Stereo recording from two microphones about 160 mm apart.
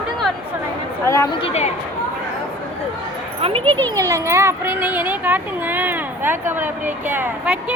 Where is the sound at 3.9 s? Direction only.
20° right (ahead or behind).